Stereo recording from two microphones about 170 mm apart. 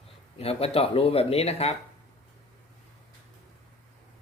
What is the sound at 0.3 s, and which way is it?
Speech, 35° left (ahead or behind).